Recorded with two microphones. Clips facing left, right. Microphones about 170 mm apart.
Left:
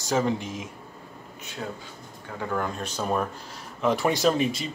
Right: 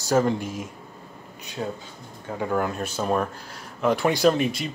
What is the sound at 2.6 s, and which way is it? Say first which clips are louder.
Speech: right 2 dB; 5° right (ahead or behind).